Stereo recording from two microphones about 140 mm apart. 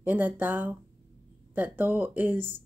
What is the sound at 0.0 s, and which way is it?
Speech, 15° right (ahead or behind).